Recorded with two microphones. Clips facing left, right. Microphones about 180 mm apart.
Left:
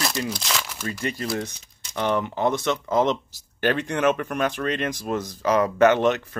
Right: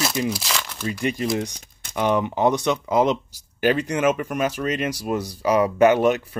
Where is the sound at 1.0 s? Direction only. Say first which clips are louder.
Right 4 dB; 15° right (ahead or behind).